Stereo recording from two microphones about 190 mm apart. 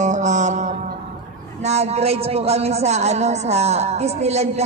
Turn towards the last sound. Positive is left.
turn(degrees=-35)  # may be behind; listen again after turning